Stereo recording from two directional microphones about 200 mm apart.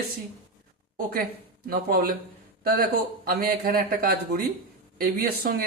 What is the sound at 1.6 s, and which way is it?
Speech, 50° right (ahead or behind).